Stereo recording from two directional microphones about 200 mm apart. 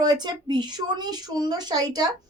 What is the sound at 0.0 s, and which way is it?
A woman's voice, 20° right (ahead or behind).